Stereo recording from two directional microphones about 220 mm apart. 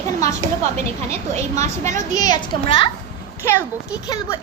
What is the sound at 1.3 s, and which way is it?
Speech, 30° right (ahead or behind).